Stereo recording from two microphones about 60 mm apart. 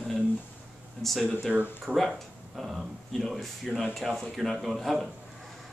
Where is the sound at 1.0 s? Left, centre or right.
Centre.